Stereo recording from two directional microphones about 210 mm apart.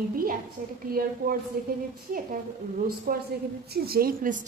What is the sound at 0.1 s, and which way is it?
Speech, 45° right (ahead or behind).